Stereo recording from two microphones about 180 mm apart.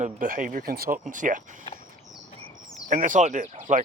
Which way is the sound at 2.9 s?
45° right (ahead or behind).